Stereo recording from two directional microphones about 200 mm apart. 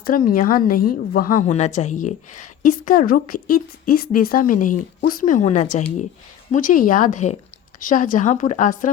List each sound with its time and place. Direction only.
0.3 s a woman's voice: 45° left (ahead or behind)